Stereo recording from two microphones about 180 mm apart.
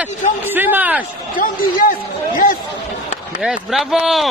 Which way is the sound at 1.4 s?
50° left (ahead or behind).